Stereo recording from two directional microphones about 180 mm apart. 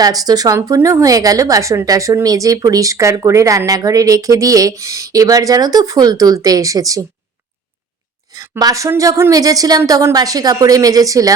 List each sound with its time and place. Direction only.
0.0 s a woman's voice: 20° right (ahead or behind)
8.4 s a woman's voice: 20° right (ahead or behind)